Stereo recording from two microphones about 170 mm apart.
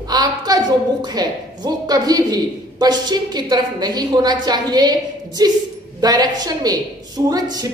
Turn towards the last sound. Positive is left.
turn(degrees=-20)  # may be behind; listen again after turning